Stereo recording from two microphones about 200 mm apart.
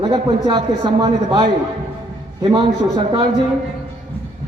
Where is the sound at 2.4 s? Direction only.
30° right (ahead or behind).